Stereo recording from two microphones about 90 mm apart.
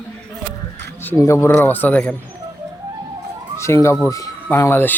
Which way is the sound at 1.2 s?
30° left (ahead or behind).